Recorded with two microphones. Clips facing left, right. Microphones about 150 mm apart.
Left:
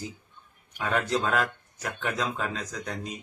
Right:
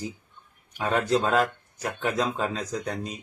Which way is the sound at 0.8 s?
30° right (ahead or behind).